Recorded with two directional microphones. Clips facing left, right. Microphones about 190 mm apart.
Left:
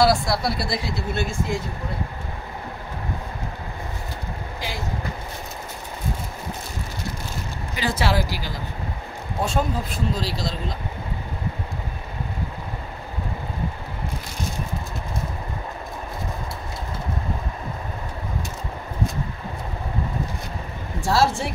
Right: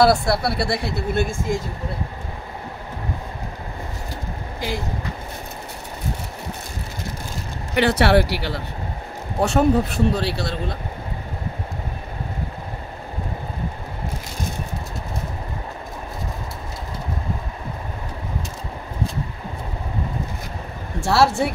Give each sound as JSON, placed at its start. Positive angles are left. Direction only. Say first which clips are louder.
{"t": 0.0, "sound": "speech", "louder": "right 3 dB", "side_deg": -60}
{"t": 7.7, "sound": "a man's voice", "louder": "right 7 dB", "side_deg": -65}
{"t": 21.1, "sound": "a man's voice", "louder": "right 3 dB", "side_deg": -70}